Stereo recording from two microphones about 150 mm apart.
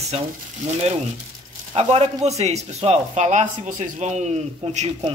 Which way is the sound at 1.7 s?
45° right (ahead or behind).